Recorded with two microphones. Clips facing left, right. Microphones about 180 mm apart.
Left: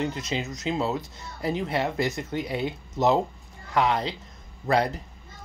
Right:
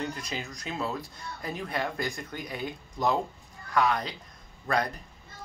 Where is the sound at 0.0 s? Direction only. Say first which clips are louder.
Left 6 dB; 25° left (ahead or behind).